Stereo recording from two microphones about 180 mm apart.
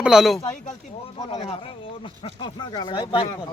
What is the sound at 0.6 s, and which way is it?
Speech, 35° left (ahead or behind).